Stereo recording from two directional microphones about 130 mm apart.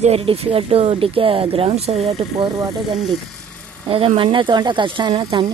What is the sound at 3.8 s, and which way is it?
Speech, 45° right (ahead or behind).